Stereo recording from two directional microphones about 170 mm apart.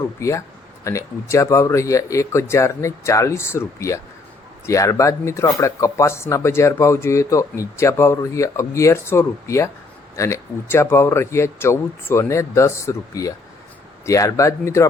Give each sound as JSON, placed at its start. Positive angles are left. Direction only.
{"t": 0.2, "sound": "speech", "side_deg": 20}